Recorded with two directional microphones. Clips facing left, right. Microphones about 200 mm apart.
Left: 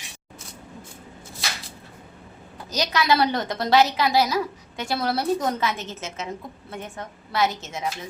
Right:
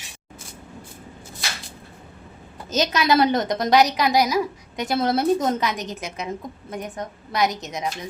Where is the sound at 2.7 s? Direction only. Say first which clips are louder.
Right 3 dB; 20° right (ahead or behind).